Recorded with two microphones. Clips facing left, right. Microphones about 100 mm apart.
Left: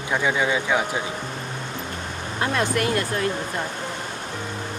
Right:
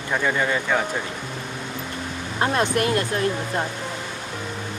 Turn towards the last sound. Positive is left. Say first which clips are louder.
# right 2 dB
turn(degrees=-35)  # may be behind; listen again after turning